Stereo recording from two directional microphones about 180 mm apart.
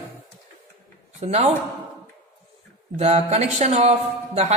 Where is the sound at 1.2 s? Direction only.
35° right (ahead or behind).